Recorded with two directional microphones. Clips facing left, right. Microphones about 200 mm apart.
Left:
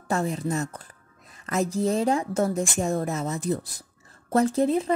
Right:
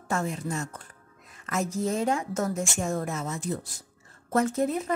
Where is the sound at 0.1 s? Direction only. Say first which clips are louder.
Left 4 dB; 35° left (ahead or behind).